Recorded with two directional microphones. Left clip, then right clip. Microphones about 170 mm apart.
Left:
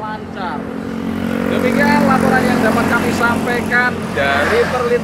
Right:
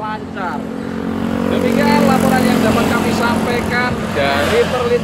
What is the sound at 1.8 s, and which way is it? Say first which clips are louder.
Vehicle: even; 10° left (ahead or behind).